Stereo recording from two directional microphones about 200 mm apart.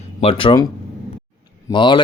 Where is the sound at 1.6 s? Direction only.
25° left (ahead or behind).